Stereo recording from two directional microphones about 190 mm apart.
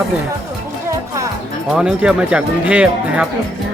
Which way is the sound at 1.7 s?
5° right (ahead or behind).